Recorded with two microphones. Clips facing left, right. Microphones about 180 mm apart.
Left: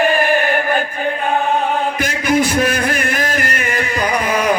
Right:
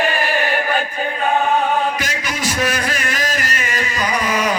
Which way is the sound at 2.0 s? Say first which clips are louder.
Left 9 dB; 55° left (ahead or behind).